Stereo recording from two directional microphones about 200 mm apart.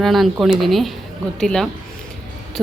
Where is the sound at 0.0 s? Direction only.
Centre (ahead or behind).